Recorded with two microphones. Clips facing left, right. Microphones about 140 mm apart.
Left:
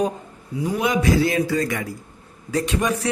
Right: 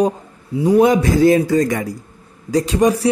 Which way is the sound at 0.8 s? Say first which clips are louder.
Right 6 dB; 45° right (ahead or behind).